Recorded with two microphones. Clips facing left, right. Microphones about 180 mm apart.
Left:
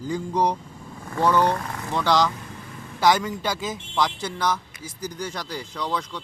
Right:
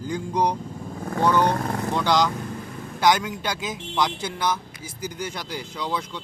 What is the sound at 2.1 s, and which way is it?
A man's voice, centre (ahead or behind).